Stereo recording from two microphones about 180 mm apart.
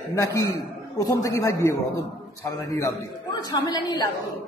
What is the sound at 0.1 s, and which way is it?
A man's voice, 15° left (ahead or behind).